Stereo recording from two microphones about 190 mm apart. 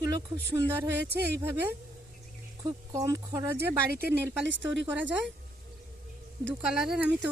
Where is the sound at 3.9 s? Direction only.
60° right (ahead or behind).